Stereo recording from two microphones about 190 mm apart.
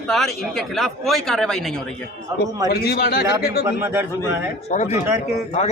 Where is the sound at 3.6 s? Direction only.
10° right (ahead or behind).